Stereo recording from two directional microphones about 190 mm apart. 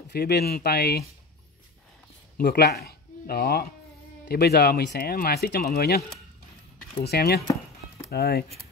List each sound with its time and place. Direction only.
0.1 s speech: 60° left (ahead or behind)
2.3 s speech: 55° left (ahead or behind)
7.1 s speech: 55° left (ahead or behind)